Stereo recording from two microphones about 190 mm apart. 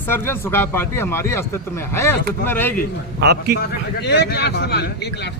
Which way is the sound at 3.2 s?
60° right (ahead or behind).